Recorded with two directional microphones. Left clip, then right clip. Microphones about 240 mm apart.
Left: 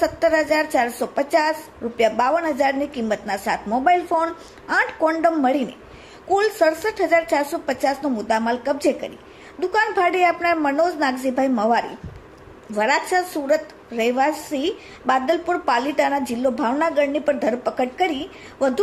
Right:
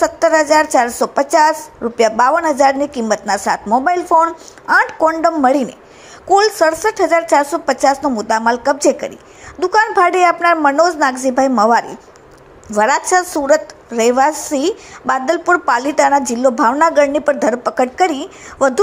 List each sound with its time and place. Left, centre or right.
0.0 s a woman's voice: centre